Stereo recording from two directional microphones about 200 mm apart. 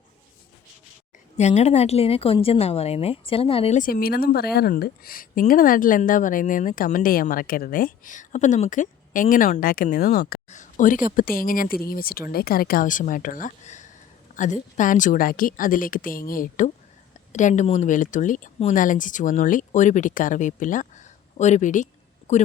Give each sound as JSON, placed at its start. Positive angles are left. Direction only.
{"t": 1.4, "sound": "a woman's voice", "side_deg": 35}